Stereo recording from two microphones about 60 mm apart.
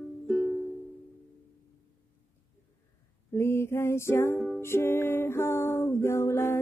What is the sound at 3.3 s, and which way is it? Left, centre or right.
Music, left.